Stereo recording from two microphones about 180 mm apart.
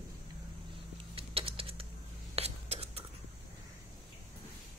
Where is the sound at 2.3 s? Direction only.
35° right (ahead or behind).